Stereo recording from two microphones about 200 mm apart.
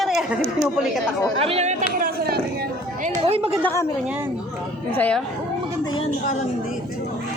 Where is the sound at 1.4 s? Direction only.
30° right (ahead or behind).